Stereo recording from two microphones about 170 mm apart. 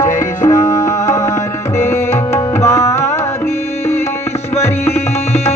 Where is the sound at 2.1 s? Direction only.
15° left (ahead or behind).